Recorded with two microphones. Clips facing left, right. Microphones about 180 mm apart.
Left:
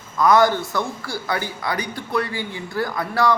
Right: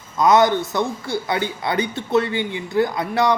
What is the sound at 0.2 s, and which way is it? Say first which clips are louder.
A man's voice: right 1 dB; 20° right (ahead or behind).